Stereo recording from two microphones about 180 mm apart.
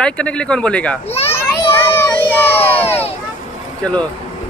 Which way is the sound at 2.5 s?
10° left (ahead or behind).